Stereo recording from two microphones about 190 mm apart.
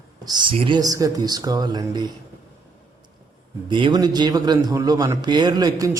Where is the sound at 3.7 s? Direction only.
25° right (ahead or behind).